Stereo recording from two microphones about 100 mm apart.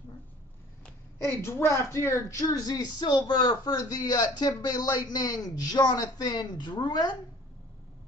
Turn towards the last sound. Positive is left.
turn(degrees=45)  # may be behind; listen again after turning